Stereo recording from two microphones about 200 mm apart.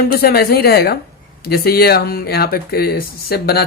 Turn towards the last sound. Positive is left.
turn(degrees=50)  # may be behind; listen again after turning